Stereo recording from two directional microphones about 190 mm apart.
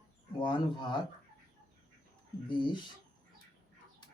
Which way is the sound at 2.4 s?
25° left (ahead or behind).